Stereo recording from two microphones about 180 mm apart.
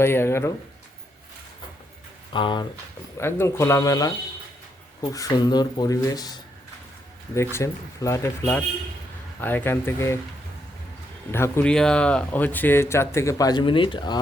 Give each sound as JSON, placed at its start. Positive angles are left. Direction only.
{"t": 0.0, "sound": "speech", "side_deg": 15}
{"t": 2.3, "sound": "speech", "side_deg": 25}
{"t": 3.2, "sound": "speech", "side_deg": 15}
{"t": 5.1, "sound": "speech", "side_deg": 20}
{"t": 11.3, "sound": "speech", "side_deg": 15}